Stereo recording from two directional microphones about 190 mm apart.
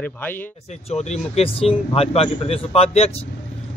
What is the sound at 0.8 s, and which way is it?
A man's voice, 35° left (ahead or behind).